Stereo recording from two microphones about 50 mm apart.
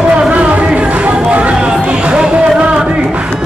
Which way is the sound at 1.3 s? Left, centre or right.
Right.